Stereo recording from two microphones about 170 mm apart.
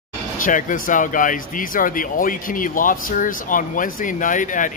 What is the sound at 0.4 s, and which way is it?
Speech, 50° left (ahead or behind).